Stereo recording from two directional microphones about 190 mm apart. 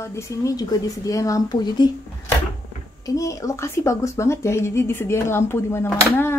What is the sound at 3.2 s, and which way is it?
Speech, 15° left (ahead or behind).